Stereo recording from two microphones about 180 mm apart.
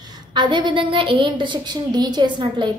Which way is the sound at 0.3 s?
25° right (ahead or behind).